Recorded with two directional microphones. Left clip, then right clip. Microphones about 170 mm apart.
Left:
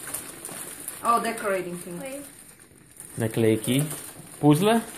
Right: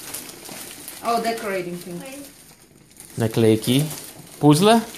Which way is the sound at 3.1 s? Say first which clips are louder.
Right 5 dB; 30° right (ahead or behind).